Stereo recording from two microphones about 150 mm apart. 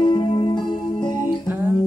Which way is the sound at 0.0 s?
35° left (ahead or behind).